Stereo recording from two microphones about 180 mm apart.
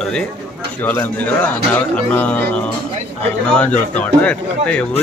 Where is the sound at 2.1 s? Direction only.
10° left (ahead or behind).